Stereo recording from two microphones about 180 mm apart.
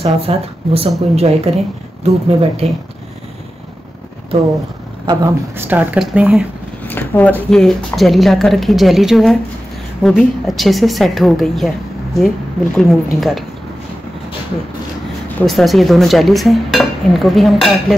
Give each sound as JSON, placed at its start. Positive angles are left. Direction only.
{"t": 0.0, "sound": "speech", "side_deg": -35}
{"t": 5.0, "sound": "speech", "side_deg": -20}
{"t": 6.9, "sound": "speech", "side_deg": 10}
{"t": 12.7, "sound": "speech", "side_deg": 0}
{"t": 15.2, "sound": "speech", "side_deg": 0}